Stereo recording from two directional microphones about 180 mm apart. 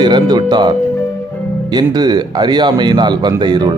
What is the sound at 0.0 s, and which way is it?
Speech, 25° right (ahead or behind).